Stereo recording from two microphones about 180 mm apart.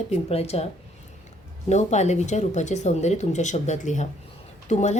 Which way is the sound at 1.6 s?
40° left (ahead or behind).